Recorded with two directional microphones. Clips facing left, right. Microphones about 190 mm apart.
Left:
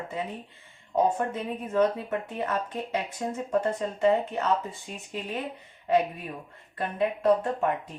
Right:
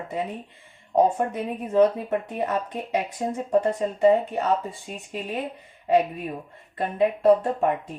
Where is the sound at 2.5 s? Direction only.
15° right (ahead or behind).